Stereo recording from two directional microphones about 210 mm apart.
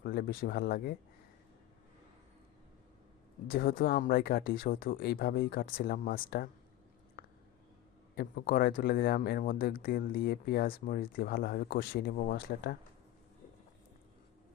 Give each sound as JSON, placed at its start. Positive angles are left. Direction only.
{"t": 0.0, "sound": "speech", "side_deg": 45}
{"t": 3.4, "sound": "speech", "side_deg": 45}
{"t": 8.1, "sound": "speech", "side_deg": 50}